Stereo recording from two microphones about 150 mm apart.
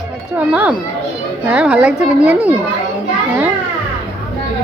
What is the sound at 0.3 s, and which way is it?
Speech, 10° right (ahead or behind).